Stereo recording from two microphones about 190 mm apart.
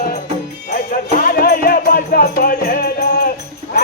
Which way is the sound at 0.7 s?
45° left (ahead or behind).